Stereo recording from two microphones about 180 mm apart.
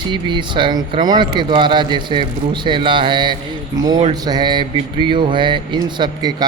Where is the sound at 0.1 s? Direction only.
25° right (ahead or behind).